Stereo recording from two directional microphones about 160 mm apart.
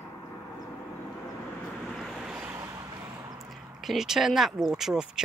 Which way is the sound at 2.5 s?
20° right (ahead or behind).